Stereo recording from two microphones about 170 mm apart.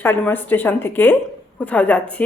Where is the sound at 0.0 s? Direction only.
10° left (ahead or behind).